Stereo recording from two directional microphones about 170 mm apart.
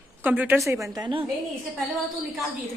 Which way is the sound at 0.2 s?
10° right (ahead or behind).